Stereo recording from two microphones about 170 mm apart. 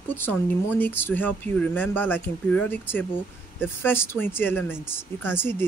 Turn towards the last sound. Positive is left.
turn(degrees=15)  # may be behind; listen again after turning